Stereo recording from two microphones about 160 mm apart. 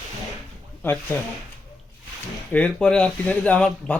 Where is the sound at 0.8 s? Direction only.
10° left (ahead or behind).